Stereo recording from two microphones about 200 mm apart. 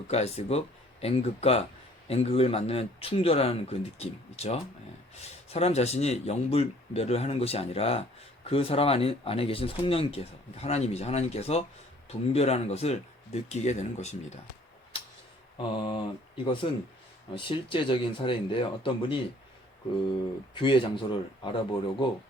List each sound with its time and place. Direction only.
0.1 s speech: 30° left (ahead or behind)
15.5 s speech: 25° left (ahead or behind)